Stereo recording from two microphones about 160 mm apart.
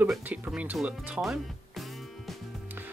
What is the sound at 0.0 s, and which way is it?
Speech, 10° right (ahead or behind).